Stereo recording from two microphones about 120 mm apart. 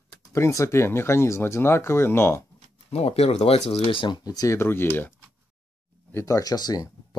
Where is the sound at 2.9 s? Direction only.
60° left (ahead or behind).